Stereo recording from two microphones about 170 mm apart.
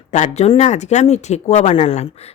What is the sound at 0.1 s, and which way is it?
Speech, 40° left (ahead or behind).